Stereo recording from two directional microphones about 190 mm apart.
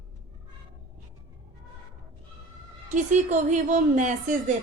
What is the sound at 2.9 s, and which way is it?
A woman's voice, 40° right (ahead or behind).